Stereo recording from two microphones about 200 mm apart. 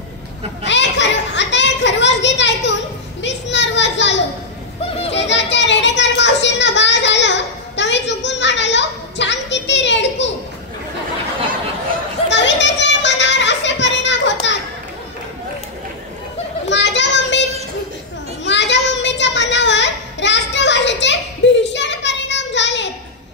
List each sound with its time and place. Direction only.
0.7 s children playing: 60° left (ahead or behind)
5.1 s a sound: 60° left (ahead or behind)
12.3 s children playing: 60° left (ahead or behind)
16.6 s children playing: 60° left (ahead or behind)
18.4 s child singing: 65° left (ahead or behind)